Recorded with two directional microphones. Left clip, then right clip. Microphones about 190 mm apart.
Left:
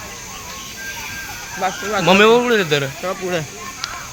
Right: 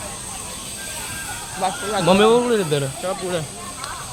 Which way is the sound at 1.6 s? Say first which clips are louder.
Left 2 dB; 45° left (ahead or behind).